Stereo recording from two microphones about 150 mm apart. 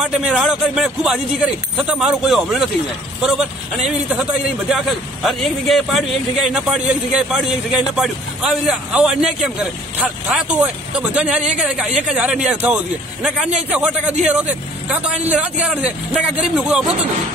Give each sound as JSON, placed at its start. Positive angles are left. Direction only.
{"t": 0.0, "sound": "a man's voice", "side_deg": -5}
{"t": 4.1, "sound": "a man's voice", "side_deg": 0}